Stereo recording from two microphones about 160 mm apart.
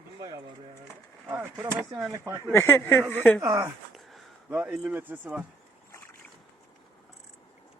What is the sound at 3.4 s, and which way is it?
Speech, 20° right (ahead or behind).